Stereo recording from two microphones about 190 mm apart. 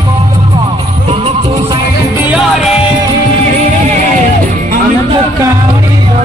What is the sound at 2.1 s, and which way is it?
Music, 5° right (ahead or behind).